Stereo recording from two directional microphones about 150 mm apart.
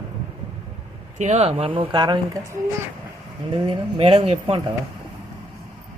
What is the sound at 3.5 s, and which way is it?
Speech, 30° right (ahead or behind).